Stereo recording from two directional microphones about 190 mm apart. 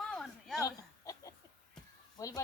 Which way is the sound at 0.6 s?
20° left (ahead or behind).